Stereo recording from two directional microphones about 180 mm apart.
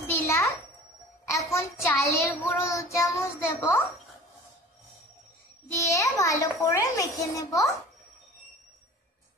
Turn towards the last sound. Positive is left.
turn(degrees=20)  # may be behind; listen again after turning